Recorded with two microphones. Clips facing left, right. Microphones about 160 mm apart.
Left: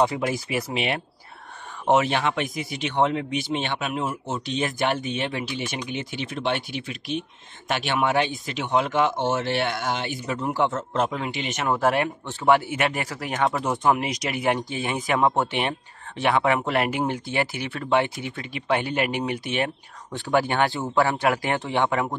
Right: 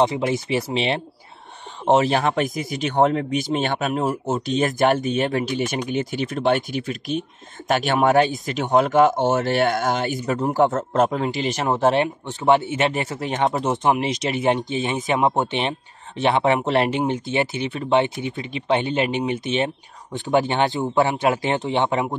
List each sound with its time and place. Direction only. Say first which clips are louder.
0.0 s speech: right 3 dB; 25° right (ahead or behind)